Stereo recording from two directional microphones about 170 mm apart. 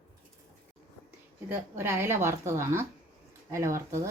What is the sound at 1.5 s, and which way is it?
Speech, 15° right (ahead or behind).